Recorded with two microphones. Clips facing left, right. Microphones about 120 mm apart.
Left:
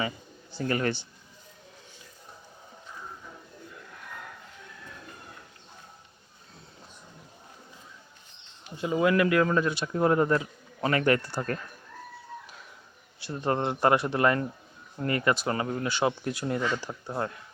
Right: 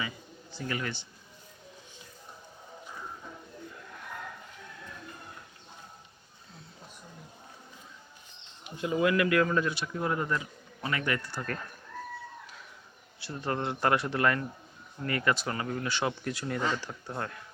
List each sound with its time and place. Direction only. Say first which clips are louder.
0.6 s speech: left 7 dB; 45° left (ahead or behind)
8.8 s speech: left 3 dB; 30° left (ahead or behind)
9.8 s speech: left 8 dB; 40° left (ahead or behind)
11.2 s speech: left 5 dB; 30° left (ahead or behind)
13.2 s speech: left 5 dB; 20° left (ahead or behind)